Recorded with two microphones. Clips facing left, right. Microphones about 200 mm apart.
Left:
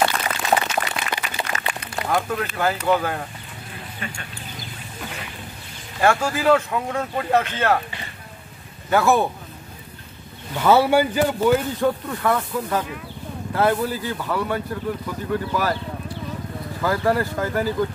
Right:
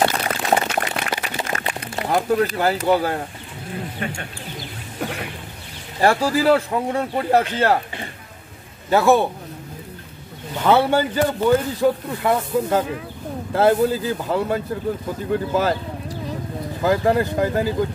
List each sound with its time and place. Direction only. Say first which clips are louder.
0.1 s a sound: right 2 dB; 40° right (ahead or behind)
0.7 s a sound: right 2 dB; 50° right (ahead or behind)
2.0 s speech: right 5 dB; 30° right (ahead or behind)
4.0 s speech: right 5 dB; 55° right (ahead or behind)
5.0 s a sound: right 8 dB; 60° right (ahead or behind)
5.9 s speech: right 2 dB; 35° right (ahead or behind)
8.9 s speech: right 3 dB; 25° right (ahead or behind)
10.8 s a man's voice: left 1 dB; 10° left (ahead or behind)
12.1 s speech: right 2 dB; 20° right (ahead or behind)
16.8 s speech: right 3 dB; 20° right (ahead or behind)